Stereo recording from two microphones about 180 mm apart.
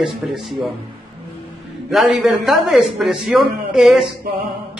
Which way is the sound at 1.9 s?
5° right (ahead or behind).